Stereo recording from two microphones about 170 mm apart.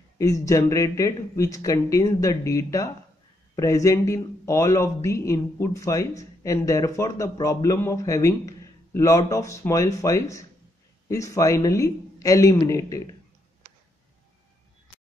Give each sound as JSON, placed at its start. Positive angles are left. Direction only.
{"t": 0.2, "sound": "speech", "side_deg": 20}